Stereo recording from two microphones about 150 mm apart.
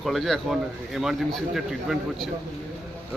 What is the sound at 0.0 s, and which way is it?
Speech, centre (ahead or behind).